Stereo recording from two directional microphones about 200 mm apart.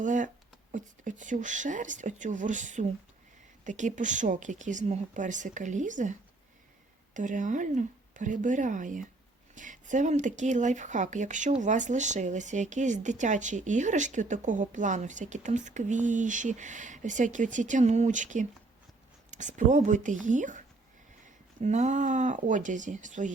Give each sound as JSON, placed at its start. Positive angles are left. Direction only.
{"t": 0.0, "sound": "speech", "side_deg": -40}
{"t": 21.6, "sound": "speech", "side_deg": -35}